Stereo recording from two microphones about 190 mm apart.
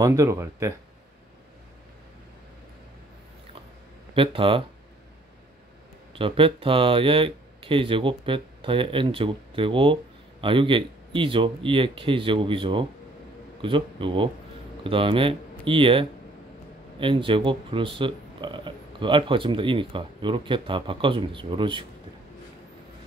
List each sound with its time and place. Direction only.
0.0 s speech: 15° right (ahead or behind)
4.1 s speech: 30° right (ahead or behind)
6.1 s a man's voice: 25° right (ahead or behind)